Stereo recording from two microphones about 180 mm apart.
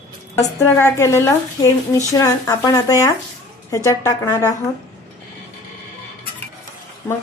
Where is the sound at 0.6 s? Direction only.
15° left (ahead or behind).